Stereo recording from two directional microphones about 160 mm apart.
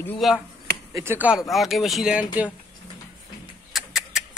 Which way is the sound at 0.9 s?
15° right (ahead or behind).